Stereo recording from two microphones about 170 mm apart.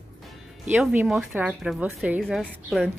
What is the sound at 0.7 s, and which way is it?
A woman's voice, 5° right (ahead or behind).